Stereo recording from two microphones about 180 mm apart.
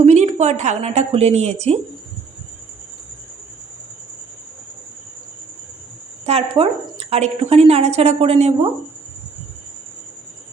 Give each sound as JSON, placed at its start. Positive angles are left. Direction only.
{"t": 0.0, "sound": "a woman's voice", "side_deg": -40}
{"t": 6.2, "sound": "a woman's voice", "side_deg": -35}